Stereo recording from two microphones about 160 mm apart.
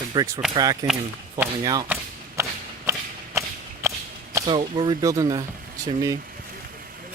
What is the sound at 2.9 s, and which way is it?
Walk, 15° right (ahead or behind).